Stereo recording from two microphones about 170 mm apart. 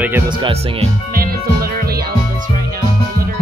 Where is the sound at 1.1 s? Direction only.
60° right (ahead or behind).